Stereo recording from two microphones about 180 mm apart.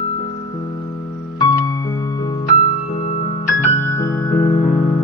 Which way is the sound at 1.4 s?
20° left (ahead or behind).